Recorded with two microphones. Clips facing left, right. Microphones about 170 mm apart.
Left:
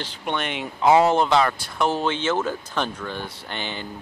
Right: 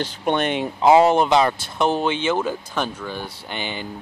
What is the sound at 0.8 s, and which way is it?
Speech, 20° right (ahead or behind).